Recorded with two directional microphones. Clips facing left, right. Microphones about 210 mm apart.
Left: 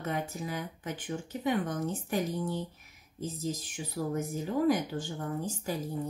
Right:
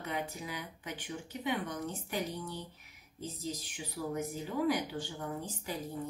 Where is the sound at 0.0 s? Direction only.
45° left (ahead or behind).